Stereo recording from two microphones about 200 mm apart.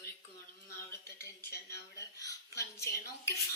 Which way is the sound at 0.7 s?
10° left (ahead or behind).